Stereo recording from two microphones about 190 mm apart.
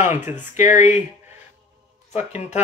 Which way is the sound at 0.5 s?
40° left (ahead or behind).